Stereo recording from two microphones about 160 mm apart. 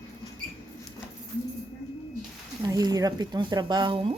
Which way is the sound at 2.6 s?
25° right (ahead or behind).